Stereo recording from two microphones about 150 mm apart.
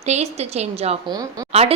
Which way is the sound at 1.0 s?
25° right (ahead or behind).